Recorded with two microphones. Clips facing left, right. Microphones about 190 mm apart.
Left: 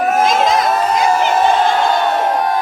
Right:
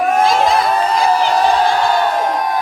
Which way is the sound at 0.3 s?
20° left (ahead or behind).